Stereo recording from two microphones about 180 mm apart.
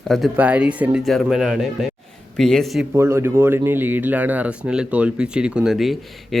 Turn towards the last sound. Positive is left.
turn(degrees=0)  # may be behind; listen again after turning